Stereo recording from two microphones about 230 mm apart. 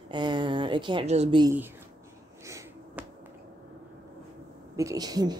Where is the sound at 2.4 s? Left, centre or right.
Centre.